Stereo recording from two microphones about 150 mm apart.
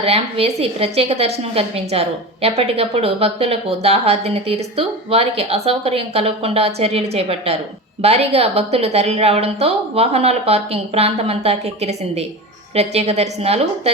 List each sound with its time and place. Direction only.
0.0 s a woman's voice: 40° right (ahead or behind)